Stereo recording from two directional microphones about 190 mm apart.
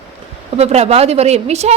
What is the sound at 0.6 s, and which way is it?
A woman's voice, 35° right (ahead or behind).